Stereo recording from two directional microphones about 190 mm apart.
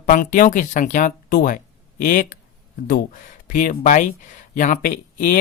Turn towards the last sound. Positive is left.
turn(degrees=45)  # may be behind; listen again after turning